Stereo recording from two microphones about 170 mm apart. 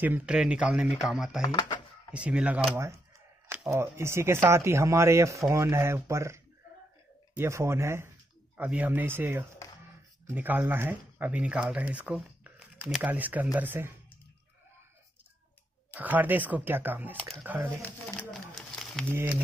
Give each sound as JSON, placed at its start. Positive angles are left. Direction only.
{"t": 0.0, "sound": "speech", "side_deg": -10}
{"t": 1.4, "sound": "a sound", "side_deg": 25}
{"t": 2.1, "sound": "speech", "side_deg": -5}
{"t": 15.9, "sound": "speech", "side_deg": -10}
{"t": 18.0, "sound": "a sound", "side_deg": 0}
{"t": 19.1, "sound": "speech", "side_deg": -10}